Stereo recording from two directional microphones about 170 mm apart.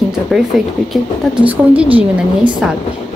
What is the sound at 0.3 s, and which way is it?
A woman's voice, centre (ahead or behind).